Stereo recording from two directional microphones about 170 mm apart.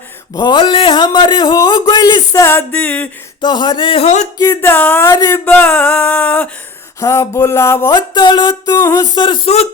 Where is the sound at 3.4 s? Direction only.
25° left (ahead or behind).